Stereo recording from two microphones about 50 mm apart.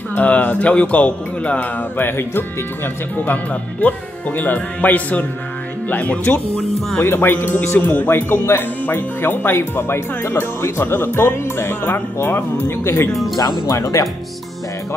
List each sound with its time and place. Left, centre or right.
0.1 s speech: left
2.0 s speech: left
3.8 s speech: left
7.0 s speech: left
13.1 s speech: centre
13.7 s speech: left